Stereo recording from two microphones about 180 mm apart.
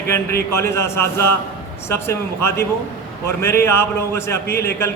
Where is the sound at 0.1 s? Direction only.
15° left (ahead or behind).